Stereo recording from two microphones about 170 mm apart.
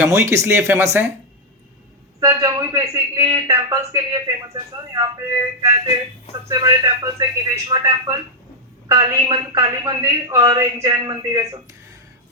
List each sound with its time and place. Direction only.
0.0 s speech: 15° right (ahead or behind)
2.2 s a man's voice: 20° right (ahead or behind)